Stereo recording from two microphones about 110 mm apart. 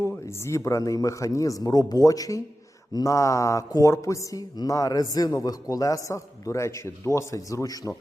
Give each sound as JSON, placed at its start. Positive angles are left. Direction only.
{"t": 0.4, "sound": "speech", "side_deg": 25}